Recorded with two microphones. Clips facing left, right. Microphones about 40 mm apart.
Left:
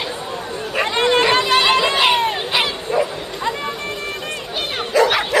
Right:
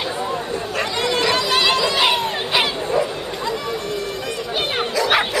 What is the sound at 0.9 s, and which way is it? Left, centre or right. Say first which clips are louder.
Chatter: left 5 dB; left.